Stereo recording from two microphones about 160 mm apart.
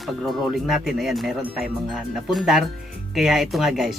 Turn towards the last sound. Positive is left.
turn(degrees=0)  # may be behind; listen again after turning